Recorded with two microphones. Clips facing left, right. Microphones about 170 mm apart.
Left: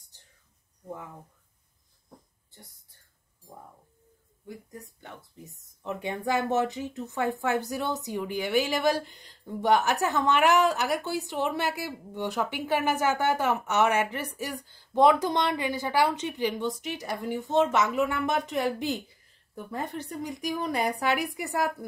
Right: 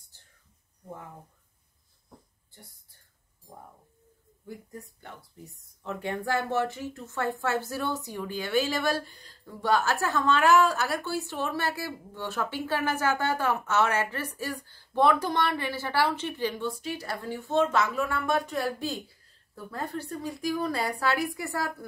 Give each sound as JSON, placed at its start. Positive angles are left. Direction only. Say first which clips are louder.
{"t": 5.4, "sound": "a woman's voice", "louder": "left 2 dB", "side_deg": 20}